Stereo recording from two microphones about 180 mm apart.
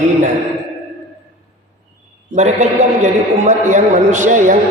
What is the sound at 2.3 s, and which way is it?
A man's voice, 40° right (ahead or behind).